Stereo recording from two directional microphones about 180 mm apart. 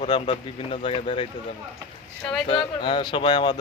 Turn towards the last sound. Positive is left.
turn(degrees=25)  # may be behind; listen again after turning